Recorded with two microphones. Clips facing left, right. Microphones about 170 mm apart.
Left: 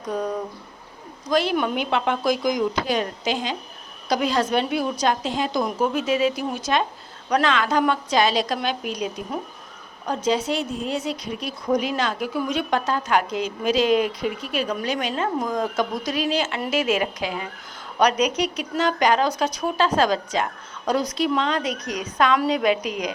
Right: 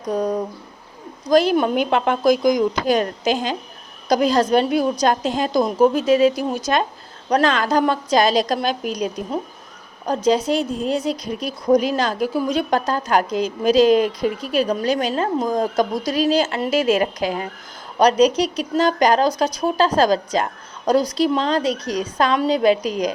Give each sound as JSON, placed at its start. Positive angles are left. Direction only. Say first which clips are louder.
{"t": 0.1, "sound": "a woman's voice", "louder": "right 5 dB", "side_deg": -40}
{"t": 1.3, "sound": "a woman's voice", "louder": "right 6 dB", "side_deg": -40}
{"t": 10.2, "sound": "a woman's voice", "louder": "right 5 dB", "side_deg": -40}
{"t": 18.0, "sound": "a woman's voice", "louder": "right 5 dB", "side_deg": -35}